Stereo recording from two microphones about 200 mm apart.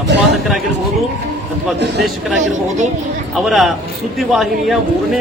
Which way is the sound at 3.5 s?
Centre (ahead or behind).